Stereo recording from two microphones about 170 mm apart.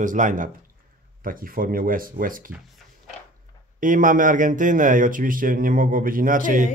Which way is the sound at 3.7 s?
50° right (ahead or behind).